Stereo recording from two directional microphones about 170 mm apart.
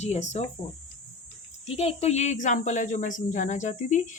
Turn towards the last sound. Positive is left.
turn(degrees=45)  # may be behind; listen again after turning